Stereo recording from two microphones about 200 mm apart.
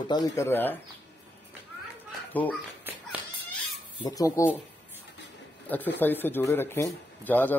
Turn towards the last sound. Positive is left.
turn(degrees=10)  # may be behind; listen again after turning